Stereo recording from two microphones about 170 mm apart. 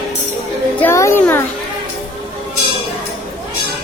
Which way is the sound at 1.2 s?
10° left (ahead or behind).